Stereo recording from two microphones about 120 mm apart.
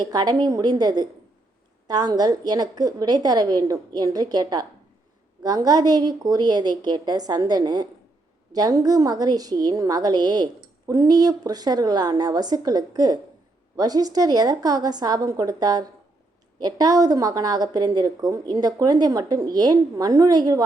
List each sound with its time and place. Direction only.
0.0 s a woman's voice: 35° right (ahead or behind)